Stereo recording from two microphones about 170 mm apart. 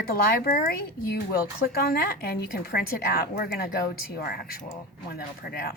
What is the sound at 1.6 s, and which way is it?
Speech, 65° left (ahead or behind).